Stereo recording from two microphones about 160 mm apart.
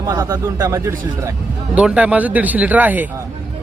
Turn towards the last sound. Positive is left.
turn(degrees=-10)  # may be behind; listen again after turning